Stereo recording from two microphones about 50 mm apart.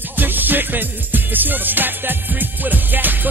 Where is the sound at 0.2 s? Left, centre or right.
Right.